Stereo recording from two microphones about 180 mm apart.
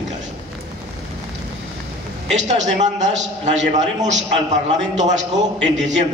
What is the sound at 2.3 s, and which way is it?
A man's voice, 40° right (ahead or behind).